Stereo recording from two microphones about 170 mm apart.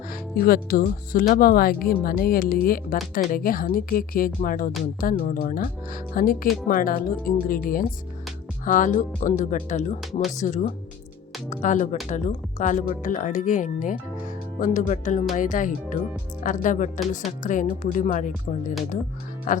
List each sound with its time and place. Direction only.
0.1 s speech: 60° left (ahead or behind)
10.1 s speech: centre (ahead or behind)
10.3 s speech: 45° left (ahead or behind)
19.5 s speech: 50° left (ahead or behind)